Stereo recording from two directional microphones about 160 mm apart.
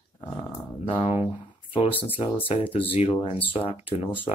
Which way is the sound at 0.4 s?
35° left (ahead or behind).